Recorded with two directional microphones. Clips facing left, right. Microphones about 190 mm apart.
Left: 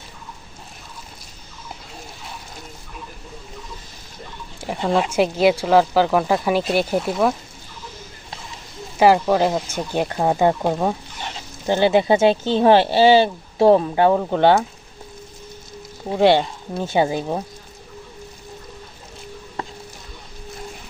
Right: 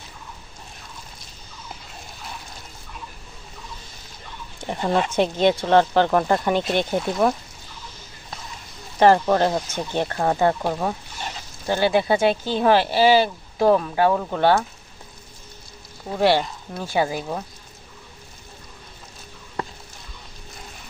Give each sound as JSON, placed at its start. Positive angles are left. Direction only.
{"t": 4.6, "sound": "speech", "side_deg": 5}
{"t": 9.0, "sound": "speech", "side_deg": 10}
{"t": 16.0, "sound": "speech", "side_deg": 20}